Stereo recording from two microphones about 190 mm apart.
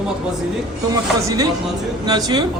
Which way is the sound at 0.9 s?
20° right (ahead or behind).